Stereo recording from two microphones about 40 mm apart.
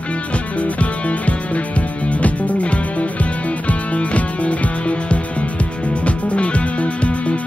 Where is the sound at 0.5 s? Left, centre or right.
Left.